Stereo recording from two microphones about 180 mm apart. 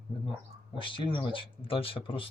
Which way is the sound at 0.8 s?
30° left (ahead or behind).